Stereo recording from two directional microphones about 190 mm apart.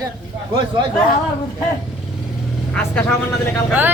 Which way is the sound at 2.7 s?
5° left (ahead or behind).